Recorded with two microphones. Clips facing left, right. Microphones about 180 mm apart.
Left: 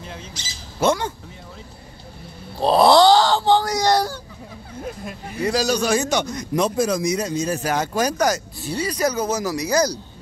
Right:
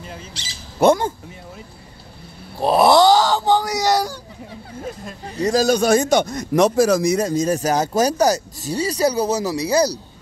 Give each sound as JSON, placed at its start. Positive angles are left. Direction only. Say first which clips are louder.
{"t": 0.4, "sound": "squawk", "louder": "right 5 dB", "side_deg": -65}
{"t": 2.6, "sound": "a sound", "louder": "even", "side_deg": -20}
{"t": 3.7, "sound": "speech", "louder": "even", "side_deg": 0}
{"t": 5.4, "sound": "a man's voice", "louder": "right 4 dB", "side_deg": -45}
{"t": 6.5, "sound": "speech", "louder": "right 5 dB", "side_deg": -75}